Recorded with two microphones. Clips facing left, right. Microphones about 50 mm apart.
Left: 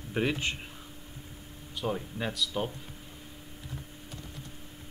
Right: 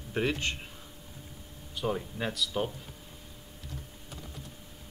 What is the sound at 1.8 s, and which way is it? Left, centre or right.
Speech, centre.